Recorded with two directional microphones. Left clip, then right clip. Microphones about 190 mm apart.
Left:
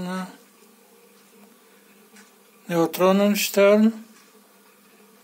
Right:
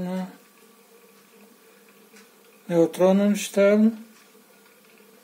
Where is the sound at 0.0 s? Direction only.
20° right (ahead or behind).